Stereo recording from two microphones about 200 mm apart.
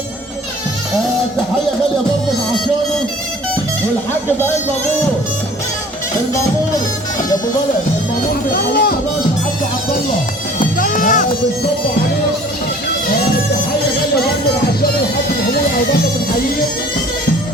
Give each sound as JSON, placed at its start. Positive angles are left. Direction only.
{"t": 8.5, "sound": "speech", "side_deg": 50}
{"t": 10.8, "sound": "sheep", "side_deg": 40}